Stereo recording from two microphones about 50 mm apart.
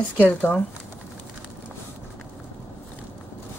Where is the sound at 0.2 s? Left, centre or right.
Left.